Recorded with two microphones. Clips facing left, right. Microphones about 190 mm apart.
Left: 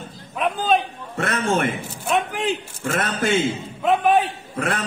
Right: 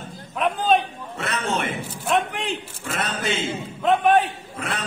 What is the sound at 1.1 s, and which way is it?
Speech, 50° left (ahead or behind).